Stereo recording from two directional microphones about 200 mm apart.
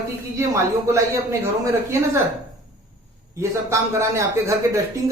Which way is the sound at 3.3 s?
15° right (ahead or behind).